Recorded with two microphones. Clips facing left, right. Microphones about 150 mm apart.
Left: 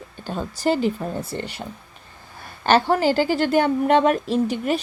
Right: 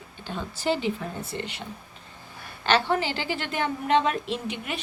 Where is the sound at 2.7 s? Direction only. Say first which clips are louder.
Left 6 dB; 45° left (ahead or behind).